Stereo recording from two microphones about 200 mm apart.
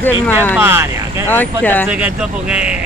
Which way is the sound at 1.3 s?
10° left (ahead or behind).